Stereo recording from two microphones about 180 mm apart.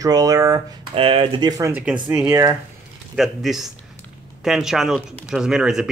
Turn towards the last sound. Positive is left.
turn(degrees=0)  # may be behind; listen again after turning